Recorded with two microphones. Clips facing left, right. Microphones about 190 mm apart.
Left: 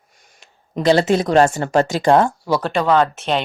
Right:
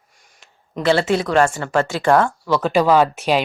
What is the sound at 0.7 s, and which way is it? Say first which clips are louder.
A woman's voice: left 2 dB; 40° left (ahead or behind).